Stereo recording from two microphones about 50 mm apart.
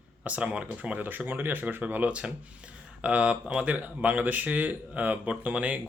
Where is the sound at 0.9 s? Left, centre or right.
Right.